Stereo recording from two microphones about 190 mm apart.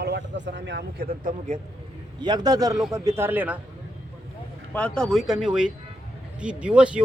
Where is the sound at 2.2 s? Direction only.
20° right (ahead or behind).